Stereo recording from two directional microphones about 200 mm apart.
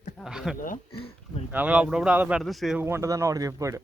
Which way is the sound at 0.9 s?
30° left (ahead or behind).